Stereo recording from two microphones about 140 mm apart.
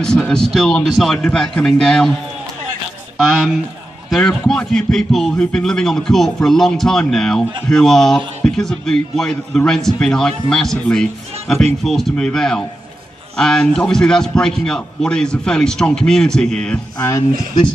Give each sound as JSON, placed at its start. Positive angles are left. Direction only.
{"t": 0.0, "sound": "a man's voice", "side_deg": 5}
{"t": 3.2, "sound": "a man's voice", "side_deg": 0}